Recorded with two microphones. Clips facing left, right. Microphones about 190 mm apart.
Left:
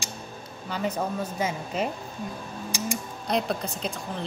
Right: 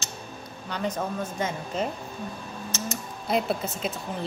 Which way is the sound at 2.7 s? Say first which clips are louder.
Left 2 dB; 15° left (ahead or behind).